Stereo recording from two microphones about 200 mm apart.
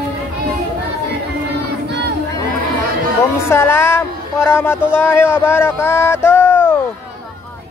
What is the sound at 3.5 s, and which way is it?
Speech, 10° left (ahead or behind).